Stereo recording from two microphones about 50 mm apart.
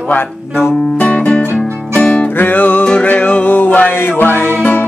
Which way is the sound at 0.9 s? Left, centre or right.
Left.